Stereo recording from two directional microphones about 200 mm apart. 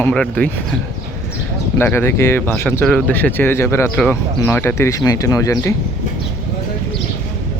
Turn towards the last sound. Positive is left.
turn(degrees=15)  # may be behind; listen again after turning